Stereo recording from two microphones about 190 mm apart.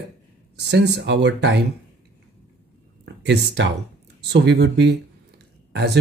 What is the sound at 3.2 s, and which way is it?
Speech, 65° right (ahead or behind).